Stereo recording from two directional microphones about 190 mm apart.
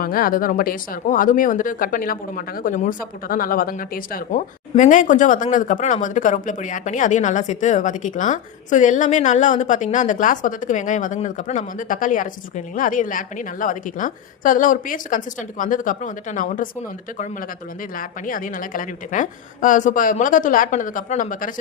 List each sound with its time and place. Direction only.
0.0 s speech: 50° left (ahead or behind)
17.9 s speech: 45° left (ahead or behind)